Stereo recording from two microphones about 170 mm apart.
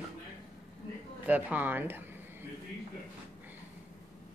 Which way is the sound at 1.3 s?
10° right (ahead or behind).